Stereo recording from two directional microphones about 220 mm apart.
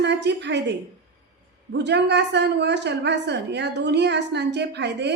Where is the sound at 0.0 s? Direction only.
50° right (ahead or behind).